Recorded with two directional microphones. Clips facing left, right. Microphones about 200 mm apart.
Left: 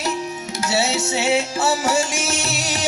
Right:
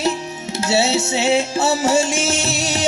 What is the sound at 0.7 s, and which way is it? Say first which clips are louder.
Music: right 4 dB; 25° right (ahead or behind).